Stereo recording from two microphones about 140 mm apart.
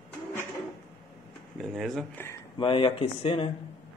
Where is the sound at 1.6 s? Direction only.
Centre (ahead or behind).